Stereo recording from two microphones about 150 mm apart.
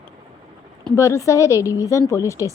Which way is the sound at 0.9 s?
20° left (ahead or behind).